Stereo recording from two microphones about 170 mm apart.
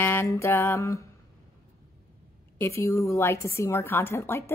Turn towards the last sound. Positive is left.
turn(degrees=15)  # may be behind; listen again after turning